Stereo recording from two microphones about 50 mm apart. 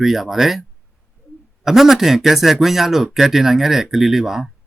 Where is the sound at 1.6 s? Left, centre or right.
Centre.